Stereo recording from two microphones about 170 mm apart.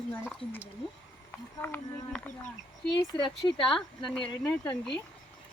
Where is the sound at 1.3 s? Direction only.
10° left (ahead or behind).